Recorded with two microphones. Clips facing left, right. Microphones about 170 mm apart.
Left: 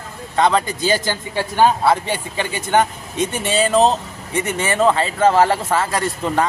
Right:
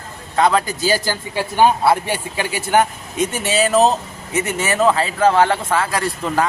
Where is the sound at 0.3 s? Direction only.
Centre (ahead or behind).